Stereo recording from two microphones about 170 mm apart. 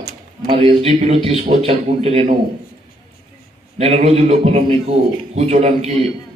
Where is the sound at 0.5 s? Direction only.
35° right (ahead or behind).